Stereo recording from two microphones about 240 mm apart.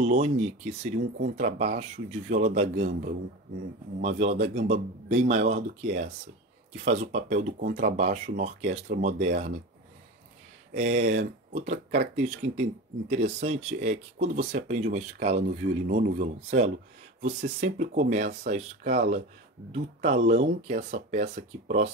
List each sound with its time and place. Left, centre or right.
0.0 s speech: right
10.7 s speech: right